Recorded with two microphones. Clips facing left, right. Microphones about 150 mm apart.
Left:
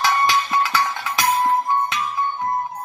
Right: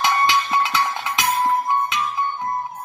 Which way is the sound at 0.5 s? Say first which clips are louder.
Even; 20° right (ahead or behind).